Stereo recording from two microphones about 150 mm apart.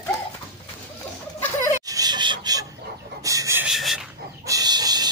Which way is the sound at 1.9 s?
25° right (ahead or behind).